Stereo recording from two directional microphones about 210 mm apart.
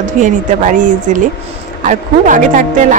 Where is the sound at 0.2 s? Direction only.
40° right (ahead or behind).